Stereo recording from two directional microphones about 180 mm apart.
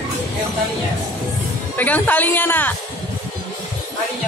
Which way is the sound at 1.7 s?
10° left (ahead or behind).